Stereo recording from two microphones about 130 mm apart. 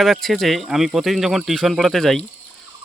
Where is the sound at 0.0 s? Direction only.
Centre (ahead or behind).